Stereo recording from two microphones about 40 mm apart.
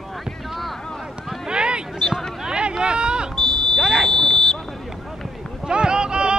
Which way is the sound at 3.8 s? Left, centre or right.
Centre.